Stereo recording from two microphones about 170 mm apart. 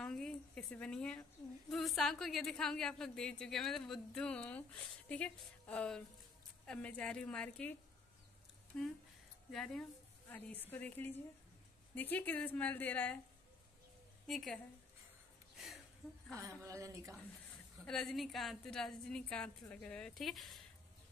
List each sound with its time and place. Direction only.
0.0 s a sound: 5° left (ahead or behind)
1.7 s a woman's voice: centre (ahead or behind)
8.7 s a woman's voice: 5° left (ahead or behind)
14.2 s speech: centre (ahead or behind)
15.5 s a sound: centre (ahead or behind)
16.3 s a woman's voice: 20° right (ahead or behind)
17.8 s speech: 5° left (ahead or behind)